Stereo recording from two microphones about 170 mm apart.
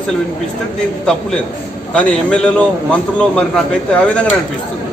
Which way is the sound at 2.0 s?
5° left (ahead or behind).